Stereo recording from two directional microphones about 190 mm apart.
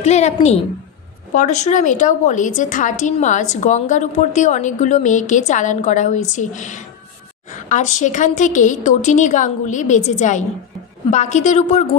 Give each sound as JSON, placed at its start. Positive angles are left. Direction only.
{"t": 0.0, "sound": "a woman's voice", "side_deg": 35}